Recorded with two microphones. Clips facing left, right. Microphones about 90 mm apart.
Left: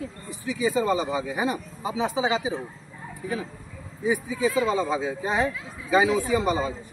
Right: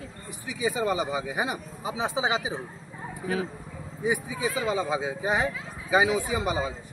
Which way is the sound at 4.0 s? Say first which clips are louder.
Left 3 dB; 15° right (ahead or behind).